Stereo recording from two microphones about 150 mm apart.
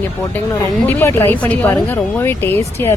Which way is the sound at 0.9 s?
15° left (ahead or behind).